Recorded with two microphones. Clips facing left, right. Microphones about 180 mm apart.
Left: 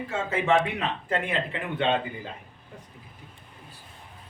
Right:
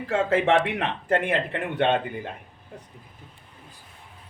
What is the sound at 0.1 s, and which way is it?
Speech, 65° right (ahead or behind).